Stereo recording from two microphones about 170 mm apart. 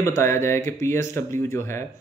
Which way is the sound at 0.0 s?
15° left (ahead or behind).